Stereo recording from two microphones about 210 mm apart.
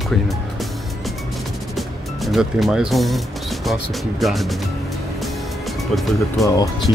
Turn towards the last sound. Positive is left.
turn(degrees=15)  # may be behind; listen again after turning